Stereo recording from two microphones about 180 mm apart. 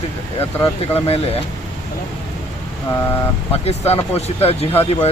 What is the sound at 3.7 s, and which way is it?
Speech, 35° left (ahead or behind).